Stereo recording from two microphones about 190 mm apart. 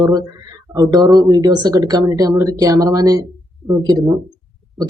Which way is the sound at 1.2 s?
20° right (ahead or behind).